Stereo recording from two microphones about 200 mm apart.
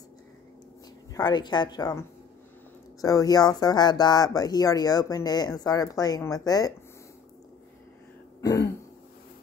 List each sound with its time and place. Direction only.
1.1 s speech: 20° left (ahead or behind)
8.4 s throat clearing: 20° left (ahead or behind)